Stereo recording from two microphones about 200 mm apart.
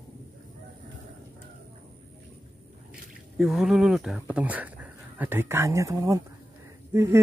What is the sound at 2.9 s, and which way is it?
Speech, centre (ahead or behind).